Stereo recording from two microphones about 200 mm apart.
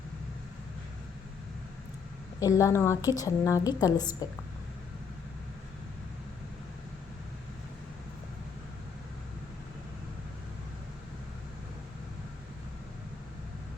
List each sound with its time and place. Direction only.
2.4 s a woman's voice: 15° left (ahead or behind)